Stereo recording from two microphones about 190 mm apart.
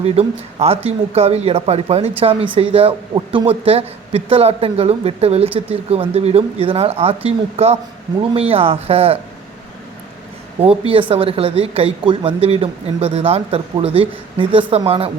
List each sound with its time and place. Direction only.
0.0 s speech: 30° right (ahead or behind)
10.6 s speech: 30° right (ahead or behind)